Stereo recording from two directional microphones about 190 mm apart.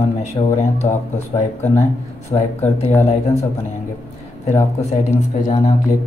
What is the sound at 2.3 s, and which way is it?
Speech, 35° left (ahead or behind).